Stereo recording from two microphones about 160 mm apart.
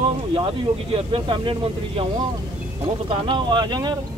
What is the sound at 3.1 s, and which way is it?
Speech, 30° right (ahead or behind).